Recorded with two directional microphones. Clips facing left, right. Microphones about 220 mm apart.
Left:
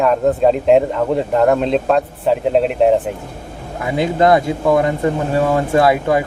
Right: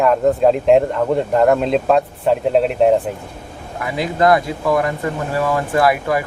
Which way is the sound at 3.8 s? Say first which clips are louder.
Left 2 dB; 25° left (ahead or behind).